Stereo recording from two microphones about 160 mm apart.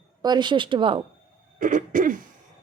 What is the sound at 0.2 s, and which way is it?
Speech, 25° right (ahead or behind).